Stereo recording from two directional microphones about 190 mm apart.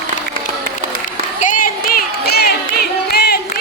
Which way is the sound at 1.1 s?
45° left (ahead or behind).